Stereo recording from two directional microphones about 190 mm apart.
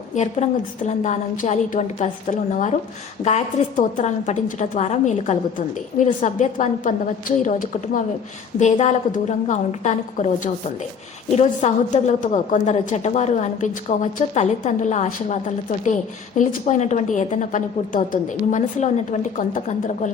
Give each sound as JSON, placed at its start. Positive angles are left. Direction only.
{"t": 0.1, "sound": "a woman's voice", "side_deg": 35}